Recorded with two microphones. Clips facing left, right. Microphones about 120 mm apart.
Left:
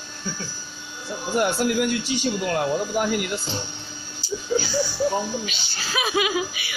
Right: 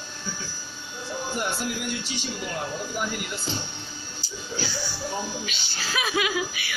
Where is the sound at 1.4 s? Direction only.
65° left (ahead or behind).